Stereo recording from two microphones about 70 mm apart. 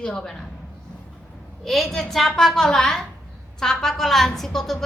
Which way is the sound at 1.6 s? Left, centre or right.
Centre.